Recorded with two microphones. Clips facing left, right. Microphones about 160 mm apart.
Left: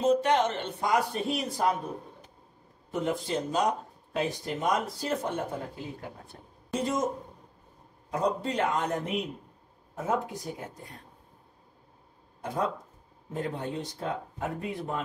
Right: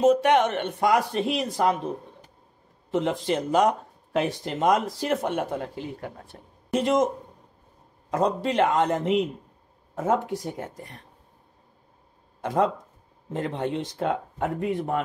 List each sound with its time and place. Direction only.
0.0 s speech: 70° right (ahead or behind); by 1.8 s 90° right
2.9 s speech: 90° right; by 6.0 s 75° right (ahead or behind)
6.7 s speech: 90° right
8.1 s a man's voice: 90° right
12.4 s a man's voice: 90° right; by 15.0 s 70° right (ahead or behind)